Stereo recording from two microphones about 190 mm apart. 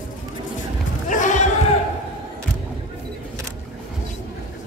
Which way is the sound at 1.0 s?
40° left (ahead or behind).